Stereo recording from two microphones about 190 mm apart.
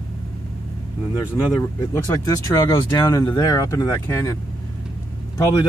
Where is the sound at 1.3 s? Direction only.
15° left (ahead or behind).